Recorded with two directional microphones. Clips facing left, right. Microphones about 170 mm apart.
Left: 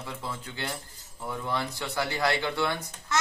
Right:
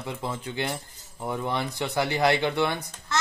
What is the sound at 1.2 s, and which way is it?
Speech, 35° right (ahead or behind).